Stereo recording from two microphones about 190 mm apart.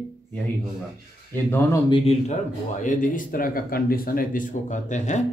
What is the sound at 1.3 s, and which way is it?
Speech, 15° left (ahead or behind).